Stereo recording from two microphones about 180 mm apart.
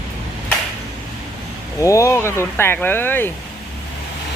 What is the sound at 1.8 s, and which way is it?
Speech, 15° left (ahead or behind).